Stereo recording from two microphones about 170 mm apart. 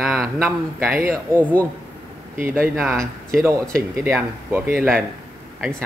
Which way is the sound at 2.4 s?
10° right (ahead or behind).